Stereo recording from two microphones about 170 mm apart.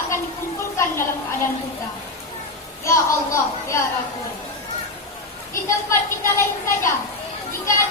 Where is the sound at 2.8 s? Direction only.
15° left (ahead or behind).